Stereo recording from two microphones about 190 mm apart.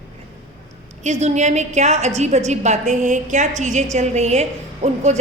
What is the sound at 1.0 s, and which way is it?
A woman's voice, 35° right (ahead or behind).